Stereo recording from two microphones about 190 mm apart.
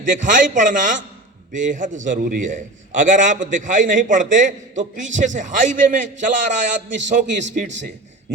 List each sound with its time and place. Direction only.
0.0 s a man's voice: 40° right (ahead or behind)